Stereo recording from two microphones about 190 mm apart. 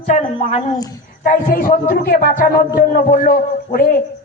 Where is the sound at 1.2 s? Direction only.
45° left (ahead or behind).